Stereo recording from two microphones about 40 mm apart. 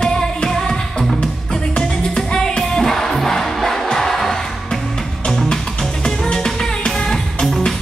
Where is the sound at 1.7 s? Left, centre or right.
Centre.